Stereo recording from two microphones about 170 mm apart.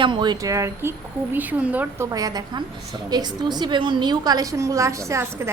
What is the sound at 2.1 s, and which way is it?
A woman's voice, 20° right (ahead or behind).